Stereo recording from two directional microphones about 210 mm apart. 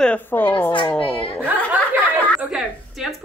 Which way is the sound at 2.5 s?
Centre (ahead or behind).